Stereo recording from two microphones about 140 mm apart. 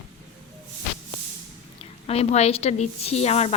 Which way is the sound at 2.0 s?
50° left (ahead or behind).